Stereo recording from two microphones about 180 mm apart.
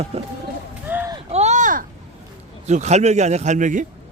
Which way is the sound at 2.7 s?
40° right (ahead or behind).